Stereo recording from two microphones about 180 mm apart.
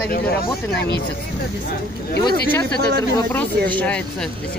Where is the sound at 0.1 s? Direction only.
55° left (ahead or behind).